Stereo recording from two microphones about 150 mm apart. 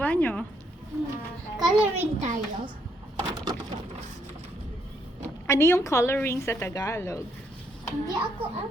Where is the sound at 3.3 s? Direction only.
30° right (ahead or behind).